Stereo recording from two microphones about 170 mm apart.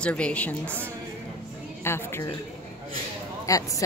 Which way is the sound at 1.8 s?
15° left (ahead or behind).